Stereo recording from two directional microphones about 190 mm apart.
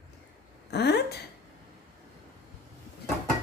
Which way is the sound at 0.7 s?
60° left (ahead or behind).